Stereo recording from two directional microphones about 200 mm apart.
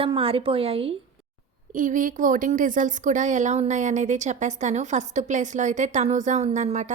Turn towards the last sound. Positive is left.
turn(degrees=-35)  # may be behind; listen again after turning